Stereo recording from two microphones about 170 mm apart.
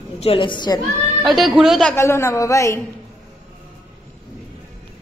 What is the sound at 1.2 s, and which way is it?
Speech, centre (ahead or behind).